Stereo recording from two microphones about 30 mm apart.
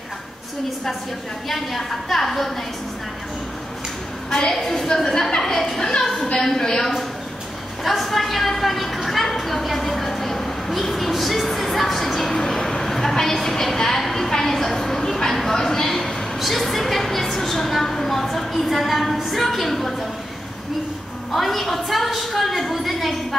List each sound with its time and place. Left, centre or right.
1.5 s a woman's voice: centre
4.3 s a woman's voice: left
4.6 s a woman's voice: centre
5.4 s a woman's voice: centre
5.8 s a woman's voice: left
6.3 s a woman's voice: centre
7.8 s a woman's voice: centre
14.3 s a sound: centre
16.3 s a woman's voice: centre
21.3 s a woman's voice: centre